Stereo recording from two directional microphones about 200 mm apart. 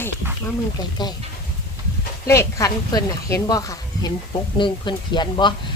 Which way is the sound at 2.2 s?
15° left (ahead or behind).